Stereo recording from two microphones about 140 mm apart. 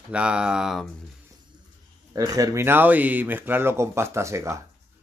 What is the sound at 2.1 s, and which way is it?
Speech, 25° right (ahead or behind).